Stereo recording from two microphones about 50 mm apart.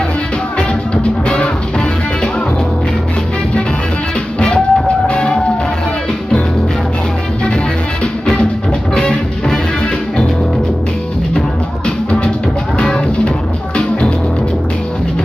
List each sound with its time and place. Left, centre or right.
4.4 s music: centre
8.9 s music: centre
12.7 s music: left